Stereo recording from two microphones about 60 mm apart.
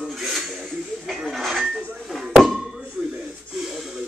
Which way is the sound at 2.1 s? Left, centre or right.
Centre.